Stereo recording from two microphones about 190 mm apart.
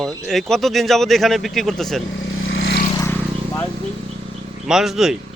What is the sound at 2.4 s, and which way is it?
Vehicle, 75° left (ahead or behind).